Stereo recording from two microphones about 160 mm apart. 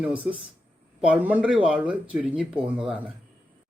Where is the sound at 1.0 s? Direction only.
10° right (ahead or behind).